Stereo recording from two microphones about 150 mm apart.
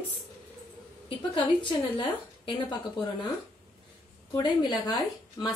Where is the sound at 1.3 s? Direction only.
35° left (ahead or behind).